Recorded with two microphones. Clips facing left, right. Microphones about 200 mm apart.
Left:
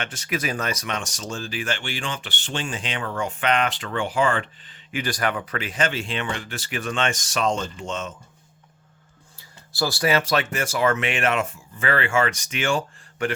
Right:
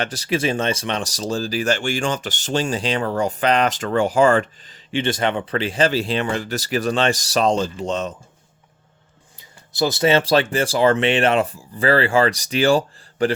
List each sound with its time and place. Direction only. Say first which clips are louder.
0.0 s speech: right 6 dB; 35° right (ahead or behind)
4.9 s speech: right 5 dB; 25° right (ahead or behind)
9.7 s speech: right 5 dB; 20° right (ahead or behind)